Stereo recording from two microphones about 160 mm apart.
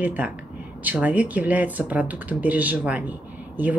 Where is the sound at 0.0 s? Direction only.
10° right (ahead or behind).